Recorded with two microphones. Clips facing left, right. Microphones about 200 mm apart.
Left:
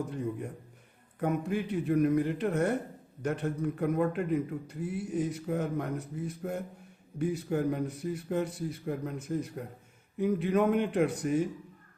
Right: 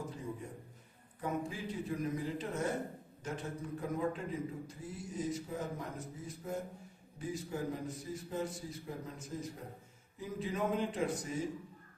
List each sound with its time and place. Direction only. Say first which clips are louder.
0.1 s a man's voice: left 8 dB; 65° left (ahead or behind)